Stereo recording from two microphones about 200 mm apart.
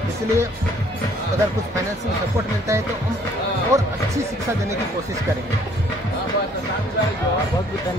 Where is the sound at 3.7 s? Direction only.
15° right (ahead or behind).